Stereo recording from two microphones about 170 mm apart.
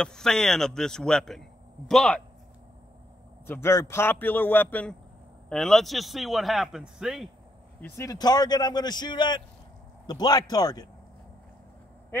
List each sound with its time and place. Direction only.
0.0 s speech: 5° left (ahead or behind)
3.4 s a man's voice: 15° left (ahead or behind); by 7.2 s centre (ahead or behind)
7.8 s speech: 20° left (ahead or behind)